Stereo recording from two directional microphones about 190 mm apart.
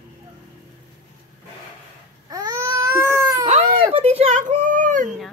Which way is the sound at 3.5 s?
30° right (ahead or behind).